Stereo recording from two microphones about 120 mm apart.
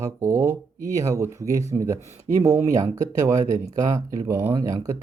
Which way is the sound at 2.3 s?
90° right.